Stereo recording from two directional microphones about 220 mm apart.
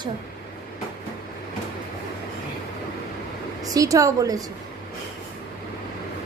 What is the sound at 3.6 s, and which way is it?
Speech, 15° right (ahead or behind).